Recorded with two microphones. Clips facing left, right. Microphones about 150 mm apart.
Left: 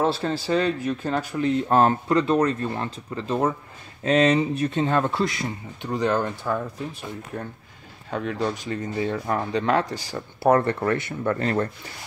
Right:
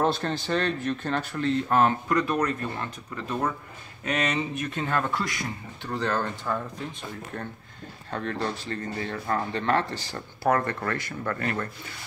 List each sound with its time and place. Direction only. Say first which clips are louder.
0.0 s speech: left 2 dB; 5° left (ahead or behind)
1.7 s speech: left 4 dB; 30° left (ahead or behind); by 10.2 s 10° left (ahead or behind)
10.4 s speech: left 5 dB; 30° left (ahead or behind)